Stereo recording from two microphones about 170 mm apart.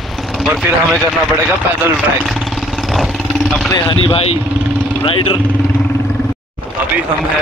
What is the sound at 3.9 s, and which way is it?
Speech, 35° left (ahead or behind).